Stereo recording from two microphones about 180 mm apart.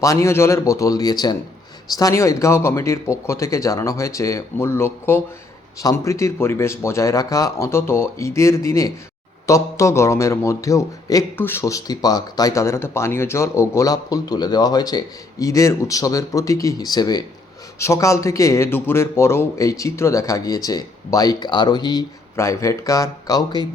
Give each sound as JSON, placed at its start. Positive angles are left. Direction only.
{"t": 0.0, "sound": "a man's voice", "side_deg": 15}